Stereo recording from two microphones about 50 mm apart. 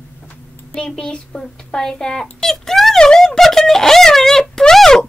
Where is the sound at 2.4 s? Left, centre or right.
Centre.